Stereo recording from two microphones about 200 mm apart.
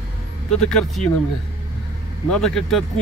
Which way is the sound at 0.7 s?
Centre (ahead or behind).